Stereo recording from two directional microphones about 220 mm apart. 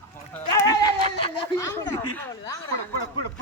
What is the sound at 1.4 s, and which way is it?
Snicker, 15° left (ahead or behind).